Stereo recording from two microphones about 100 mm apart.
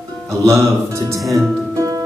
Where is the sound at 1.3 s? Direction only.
30° right (ahead or behind).